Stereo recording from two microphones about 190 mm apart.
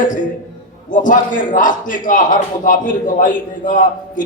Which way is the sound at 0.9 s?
45° left (ahead or behind).